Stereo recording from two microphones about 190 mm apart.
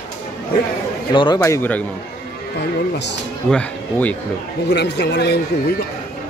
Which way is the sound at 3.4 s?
5° left (ahead or behind).